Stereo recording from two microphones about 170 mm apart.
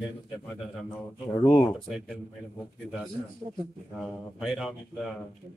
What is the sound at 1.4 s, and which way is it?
Speech, 25° left (ahead or behind).